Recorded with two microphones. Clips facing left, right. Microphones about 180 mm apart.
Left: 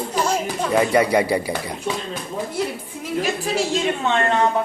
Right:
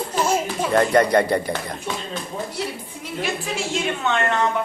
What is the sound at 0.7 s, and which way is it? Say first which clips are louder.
Speech: right 1 dB; 10° left (ahead or behind).